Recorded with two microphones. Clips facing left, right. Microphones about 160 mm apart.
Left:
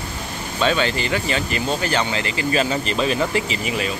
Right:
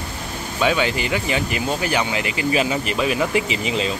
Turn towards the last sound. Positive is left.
turn(degrees=-20)  # may be behind; listen again after turning